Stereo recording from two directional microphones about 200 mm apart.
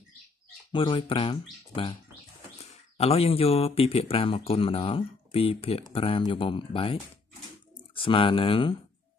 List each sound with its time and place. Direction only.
0.7 s speech: 25° left (ahead or behind)
2.6 s speech: 30° left (ahead or behind)